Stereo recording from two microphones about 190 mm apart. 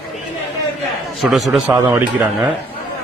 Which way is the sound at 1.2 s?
Centre (ahead or behind).